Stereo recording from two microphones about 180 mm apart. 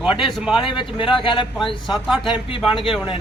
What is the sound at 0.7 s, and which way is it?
Speech, 25° left (ahead or behind).